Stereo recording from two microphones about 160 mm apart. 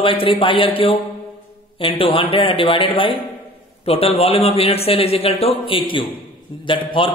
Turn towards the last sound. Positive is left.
turn(degrees=30)  # may be behind; listen again after turning